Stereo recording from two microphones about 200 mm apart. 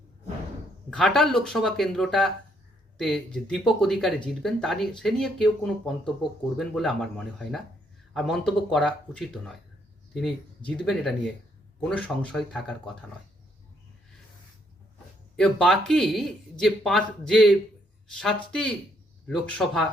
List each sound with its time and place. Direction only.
0.9 s speech: 5° left (ahead or behind)
15.4 s speech: 5° left (ahead or behind)